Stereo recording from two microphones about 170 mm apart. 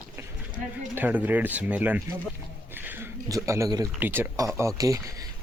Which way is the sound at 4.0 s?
15° right (ahead or behind).